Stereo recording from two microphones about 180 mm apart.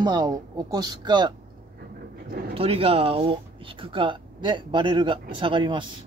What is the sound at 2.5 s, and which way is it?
Speech, 30° right (ahead or behind).